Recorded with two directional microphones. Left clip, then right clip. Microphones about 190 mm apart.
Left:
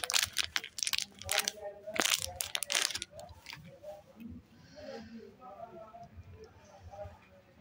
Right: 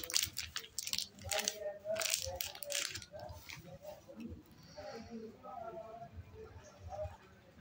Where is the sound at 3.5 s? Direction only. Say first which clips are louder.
Left 3 dB; 50° left (ahead or behind).